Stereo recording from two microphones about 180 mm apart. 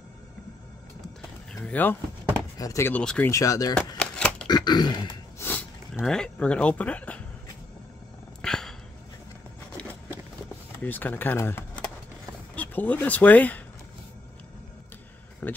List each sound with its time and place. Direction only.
1.5 s speech: 10° left (ahead or behind)
3.3 s speech: 20° left (ahead or behind)
3.7 s shuffling cards: 5° left (ahead or behind)
4.5 s a sound: 25° left (ahead or behind)
5.4 s speech: 10° left (ahead or behind)
8.4 s dog: 5° left (ahead or behind)
10.8 s speech: 10° left (ahead or behind)
15.4 s speech: 10° left (ahead or behind)